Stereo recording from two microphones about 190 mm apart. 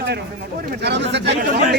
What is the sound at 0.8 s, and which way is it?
Speech, 65° right (ahead or behind).